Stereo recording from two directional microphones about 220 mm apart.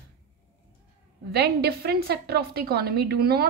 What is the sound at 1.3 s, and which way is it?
A woman's voice, 45° right (ahead or behind).